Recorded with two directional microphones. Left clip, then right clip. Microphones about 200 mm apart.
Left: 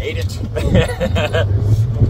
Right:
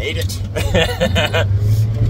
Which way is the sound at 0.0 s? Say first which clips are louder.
Right 1 dB; 25° right (ahead or behind).